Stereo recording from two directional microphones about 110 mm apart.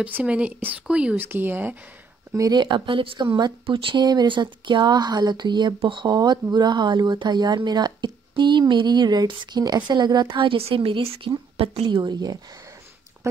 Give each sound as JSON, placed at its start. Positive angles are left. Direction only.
{"t": 0.0, "sound": "speech", "side_deg": -10}
{"t": 2.3, "sound": "speech", "side_deg": -30}
{"t": 2.6, "sound": "speech", "side_deg": -45}